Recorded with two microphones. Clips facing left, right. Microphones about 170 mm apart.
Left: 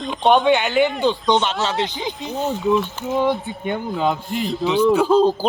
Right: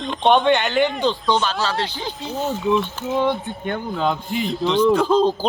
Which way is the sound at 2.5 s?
Centre (ahead or behind).